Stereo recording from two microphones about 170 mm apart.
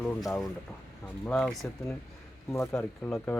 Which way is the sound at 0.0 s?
5° left (ahead or behind).